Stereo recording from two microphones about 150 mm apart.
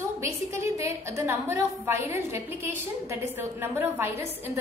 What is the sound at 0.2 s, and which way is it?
A woman's voice, 20° right (ahead or behind).